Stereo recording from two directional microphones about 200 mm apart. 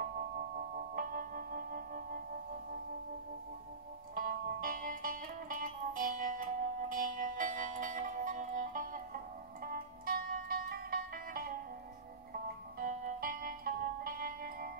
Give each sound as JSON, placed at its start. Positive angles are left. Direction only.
{"t": 0.6, "sound": "singing bowl", "side_deg": -45}
{"t": 4.1, "sound": "music", "side_deg": -45}